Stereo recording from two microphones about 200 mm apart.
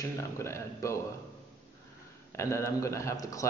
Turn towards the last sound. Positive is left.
turn(degrees=15)  # may be behind; listen again after turning